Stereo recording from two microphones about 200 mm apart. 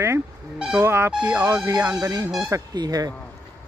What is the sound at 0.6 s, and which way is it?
Speech, 5° right (ahead or behind).